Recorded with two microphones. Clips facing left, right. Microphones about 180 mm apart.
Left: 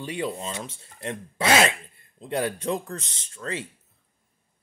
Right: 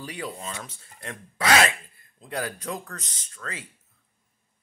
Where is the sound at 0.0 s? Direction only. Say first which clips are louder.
Left 5 dB; 25° left (ahead or behind).